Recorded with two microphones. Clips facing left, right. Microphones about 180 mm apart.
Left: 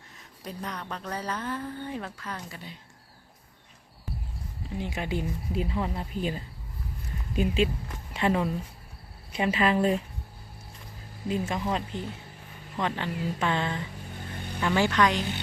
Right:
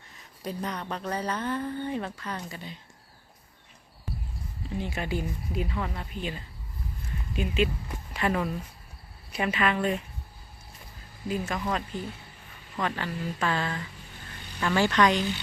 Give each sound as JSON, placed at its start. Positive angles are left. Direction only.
{"t": 0.4, "sound": "speech", "side_deg": 0}
{"t": 4.8, "sound": "a woman's voice", "side_deg": 15}
{"t": 11.3, "sound": "a woman's voice", "side_deg": 25}
{"t": 14.3, "sound": "vehicle", "side_deg": 50}
{"t": 14.6, "sound": "a woman's voice", "side_deg": 15}